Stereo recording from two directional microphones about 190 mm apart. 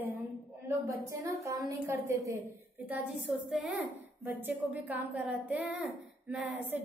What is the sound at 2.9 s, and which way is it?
A woman's voice, 5° right (ahead or behind).